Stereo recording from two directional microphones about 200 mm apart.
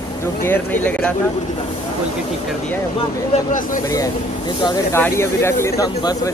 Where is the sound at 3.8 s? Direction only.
15° left (ahead or behind).